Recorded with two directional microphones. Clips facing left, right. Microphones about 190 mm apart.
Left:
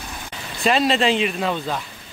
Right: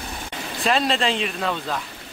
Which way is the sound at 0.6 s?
Centre (ahead or behind).